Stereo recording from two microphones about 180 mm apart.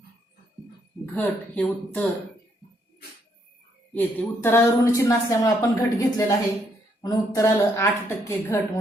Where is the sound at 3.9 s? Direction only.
10° left (ahead or behind).